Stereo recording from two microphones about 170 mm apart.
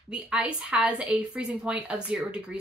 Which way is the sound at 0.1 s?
5° right (ahead or behind).